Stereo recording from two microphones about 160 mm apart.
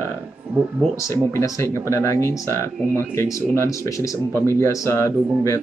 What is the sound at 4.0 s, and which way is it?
A man's voice, 15° left (ahead or behind).